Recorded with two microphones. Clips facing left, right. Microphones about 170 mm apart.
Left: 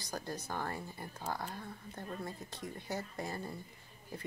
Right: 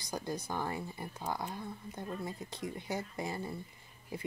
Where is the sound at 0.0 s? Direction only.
15° right (ahead or behind).